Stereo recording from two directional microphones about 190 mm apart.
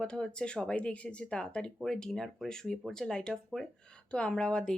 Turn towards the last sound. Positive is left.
turn(degrees=5)  # may be behind; listen again after turning